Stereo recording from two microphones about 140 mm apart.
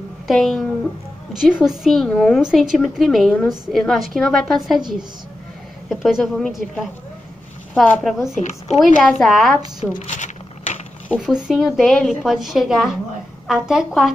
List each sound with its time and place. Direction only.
0.3 s a woman's voice: centre (ahead or behind)
7.8 s a woman's voice: centre (ahead or behind)
8.4 s speech: 55° left (ahead or behind)
9.0 s a woman's voice: centre (ahead or behind)
9.9 s patter: 60° left (ahead or behind)
11.1 s a woman's voice: 5° right (ahead or behind)